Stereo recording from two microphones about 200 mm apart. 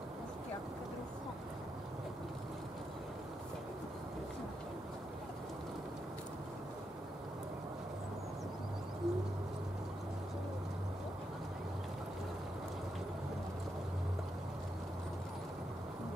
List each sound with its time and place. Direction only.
9.0 s bird: centre (ahead or behind)